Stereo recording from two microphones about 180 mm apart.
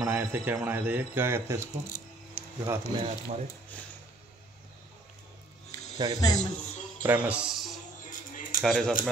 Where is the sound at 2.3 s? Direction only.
15° right (ahead or behind).